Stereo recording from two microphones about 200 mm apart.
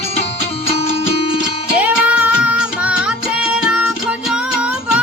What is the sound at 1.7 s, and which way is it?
Music, 5° right (ahead or behind).